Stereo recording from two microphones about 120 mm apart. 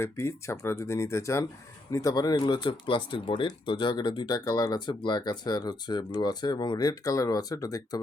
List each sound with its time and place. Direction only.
0.0 s speech: 20° left (ahead or behind)